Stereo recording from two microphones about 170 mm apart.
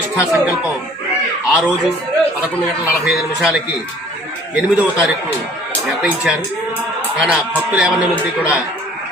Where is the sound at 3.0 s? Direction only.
5° right (ahead or behind).